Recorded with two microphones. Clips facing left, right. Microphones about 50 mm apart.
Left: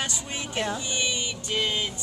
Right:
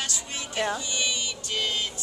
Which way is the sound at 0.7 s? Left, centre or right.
Left.